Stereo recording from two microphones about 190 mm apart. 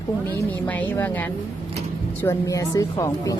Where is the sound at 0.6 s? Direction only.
10° left (ahead or behind).